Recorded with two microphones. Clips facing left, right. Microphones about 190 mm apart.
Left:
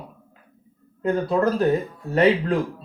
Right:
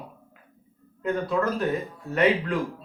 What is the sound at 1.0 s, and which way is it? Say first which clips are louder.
Speech: left 4 dB; 35° left (ahead or behind).